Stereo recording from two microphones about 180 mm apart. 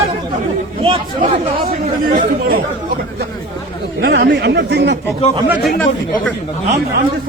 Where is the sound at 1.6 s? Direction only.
55° right (ahead or behind).